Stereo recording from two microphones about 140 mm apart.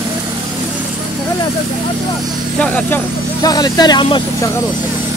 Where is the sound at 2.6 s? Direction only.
10° left (ahead or behind).